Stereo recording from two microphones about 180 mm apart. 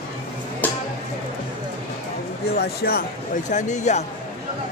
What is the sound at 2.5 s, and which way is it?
Speech, 60° left (ahead or behind).